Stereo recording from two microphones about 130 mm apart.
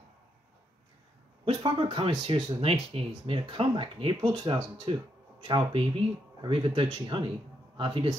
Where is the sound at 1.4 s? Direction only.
40° right (ahead or behind).